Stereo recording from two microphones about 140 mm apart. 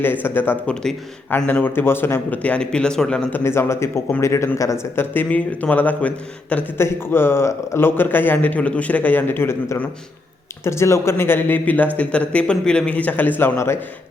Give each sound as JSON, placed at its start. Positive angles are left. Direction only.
{"t": 0.0, "sound": "speech", "side_deg": 15}
{"t": 3.4, "sound": "speech", "side_deg": 20}